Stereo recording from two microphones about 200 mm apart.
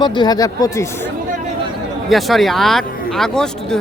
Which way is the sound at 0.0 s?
20° left (ahead or behind).